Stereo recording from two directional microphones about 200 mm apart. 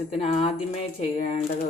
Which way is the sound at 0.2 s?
35° left (ahead or behind).